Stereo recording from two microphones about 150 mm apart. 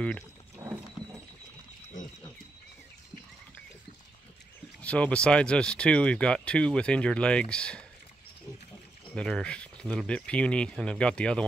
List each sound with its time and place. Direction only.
0.6 s a sound: 20° right (ahead or behind)
4.8 s speech: 10° left (ahead or behind)
9.1 s speech: 5° left (ahead or behind)